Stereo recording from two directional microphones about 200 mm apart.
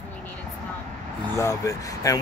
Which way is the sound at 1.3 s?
15° left (ahead or behind).